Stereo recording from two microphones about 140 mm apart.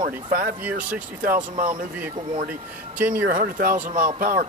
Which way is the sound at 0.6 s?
10° right (ahead or behind).